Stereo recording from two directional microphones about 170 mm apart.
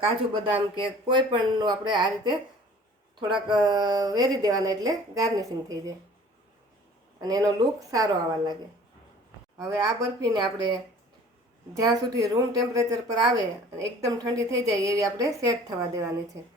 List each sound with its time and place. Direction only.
0.0 s speech: 30° right (ahead or behind)
3.5 s speech: 25° right (ahead or behind)
7.2 s speech: 20° right (ahead or behind)
9.6 s speech: 20° right (ahead or behind)
11.8 s speech: 20° right (ahead or behind)